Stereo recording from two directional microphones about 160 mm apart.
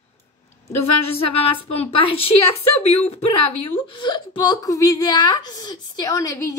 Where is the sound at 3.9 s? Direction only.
30° left (ahead or behind).